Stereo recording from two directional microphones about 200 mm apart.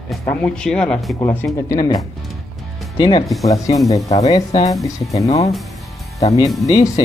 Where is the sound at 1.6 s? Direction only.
15° left (ahead or behind).